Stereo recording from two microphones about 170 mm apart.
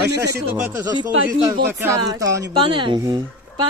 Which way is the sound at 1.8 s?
15° right (ahead or behind).